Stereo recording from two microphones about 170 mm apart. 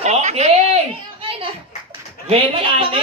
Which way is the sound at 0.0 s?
40° right (ahead or behind).